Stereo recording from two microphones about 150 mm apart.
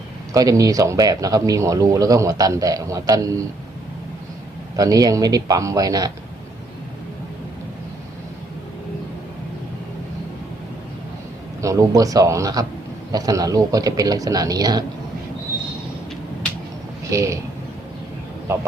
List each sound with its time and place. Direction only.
0.3 s speech: 25° right (ahead or behind)
4.8 s speech: 25° right (ahead or behind)
11.6 s speech: 20° right (ahead or behind)
17.1 s speech: 20° right (ahead or behind)